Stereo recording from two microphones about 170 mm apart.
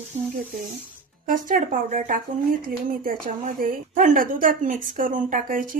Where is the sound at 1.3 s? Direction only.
50° right (ahead or behind).